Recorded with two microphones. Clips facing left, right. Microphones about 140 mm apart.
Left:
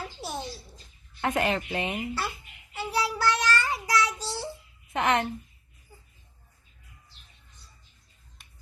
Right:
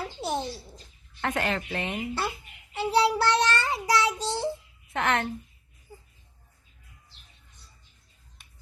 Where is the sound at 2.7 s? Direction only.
25° right (ahead or behind).